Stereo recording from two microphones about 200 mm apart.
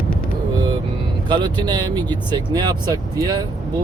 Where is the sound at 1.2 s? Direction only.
20° right (ahead or behind).